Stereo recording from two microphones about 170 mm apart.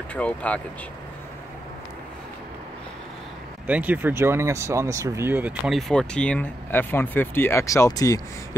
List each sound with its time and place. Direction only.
0.1 s speech: 10° left (ahead or behind)
3.6 s speech: 10° right (ahead or behind); by 8.2 s 20° left (ahead or behind)